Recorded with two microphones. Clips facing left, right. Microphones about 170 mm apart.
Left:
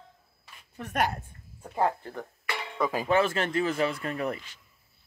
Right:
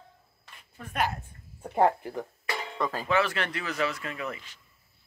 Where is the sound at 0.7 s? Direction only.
65° left (ahead or behind).